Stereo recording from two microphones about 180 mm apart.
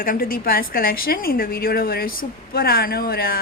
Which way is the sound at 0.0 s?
50° left (ahead or behind).